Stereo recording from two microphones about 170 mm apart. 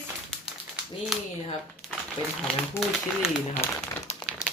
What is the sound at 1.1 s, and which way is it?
Speech, centre (ahead or behind).